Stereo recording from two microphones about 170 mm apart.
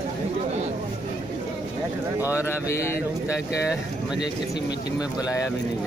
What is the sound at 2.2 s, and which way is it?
Speech, 10° right (ahead or behind).